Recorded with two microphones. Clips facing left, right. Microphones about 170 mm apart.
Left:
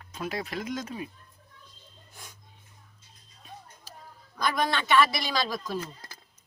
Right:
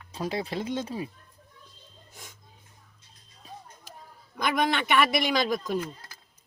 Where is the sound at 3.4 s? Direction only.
35° right (ahead or behind).